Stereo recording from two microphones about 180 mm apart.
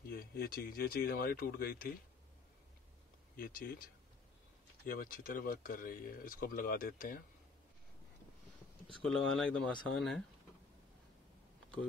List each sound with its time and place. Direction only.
0.1 s speech: 55° left (ahead or behind)
3.3 s speech: 55° left (ahead or behind)
4.8 s speech: 55° left (ahead or behind)
9.0 s speech: 5° left (ahead or behind)